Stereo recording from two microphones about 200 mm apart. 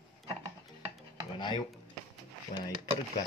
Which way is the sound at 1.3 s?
20° left (ahead or behind).